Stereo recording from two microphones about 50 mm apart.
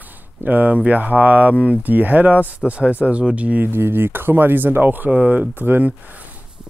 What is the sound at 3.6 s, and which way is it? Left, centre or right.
Speech, right.